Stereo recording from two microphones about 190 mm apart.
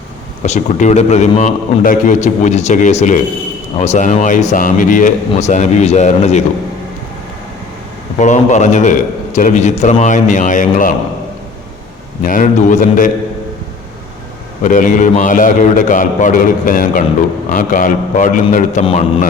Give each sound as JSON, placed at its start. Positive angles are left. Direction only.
{"t": 0.4, "sound": "a man's voice", "side_deg": 35}
{"t": 8.2, "sound": "a man's voice", "side_deg": 40}
{"t": 12.2, "sound": "a man's voice", "side_deg": 45}
{"t": 14.6, "sound": "a man's voice", "side_deg": 40}